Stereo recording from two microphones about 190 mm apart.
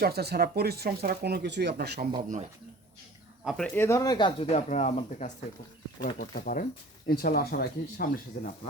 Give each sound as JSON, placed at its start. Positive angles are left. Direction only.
{"t": 0.0, "sound": "speech", "side_deg": -55}
{"t": 3.4, "sound": "speech", "side_deg": -5}
{"t": 3.8, "sound": "speech", "side_deg": 15}
{"t": 6.1, "sound": "speech", "side_deg": 50}